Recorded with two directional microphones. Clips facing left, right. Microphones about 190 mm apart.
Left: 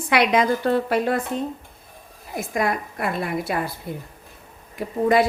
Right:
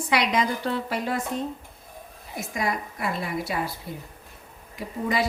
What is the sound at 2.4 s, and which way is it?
A woman's voice, 60° left (ahead or behind).